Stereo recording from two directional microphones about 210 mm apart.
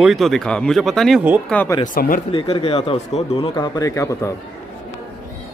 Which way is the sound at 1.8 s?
40° left (ahead or behind).